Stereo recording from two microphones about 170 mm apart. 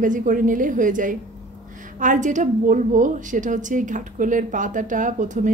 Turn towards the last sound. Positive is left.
turn(degrees=-45)  # may be behind; listen again after turning